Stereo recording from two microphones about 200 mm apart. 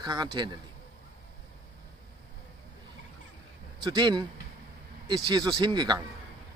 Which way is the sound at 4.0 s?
20° right (ahead or behind).